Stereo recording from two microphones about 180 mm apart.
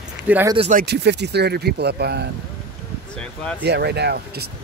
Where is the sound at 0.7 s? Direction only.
60° right (ahead or behind).